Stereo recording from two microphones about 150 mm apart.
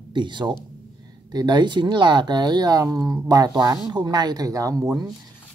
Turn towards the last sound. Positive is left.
turn(degrees=-25)  # may be behind; listen again after turning